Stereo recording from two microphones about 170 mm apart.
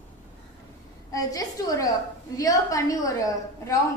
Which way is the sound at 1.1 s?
20° left (ahead or behind).